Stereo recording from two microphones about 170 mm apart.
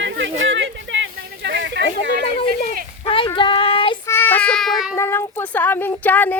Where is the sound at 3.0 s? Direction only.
30° left (ahead or behind).